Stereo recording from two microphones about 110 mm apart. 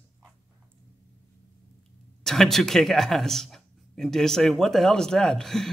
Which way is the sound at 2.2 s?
5° left (ahead or behind).